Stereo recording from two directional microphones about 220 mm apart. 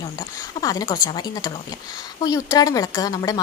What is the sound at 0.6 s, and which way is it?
A woman's voice, 15° left (ahead or behind).